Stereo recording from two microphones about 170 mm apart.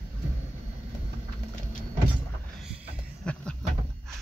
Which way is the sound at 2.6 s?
5° right (ahead or behind).